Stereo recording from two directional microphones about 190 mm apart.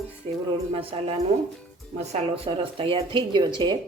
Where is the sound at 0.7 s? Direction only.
30° right (ahead or behind).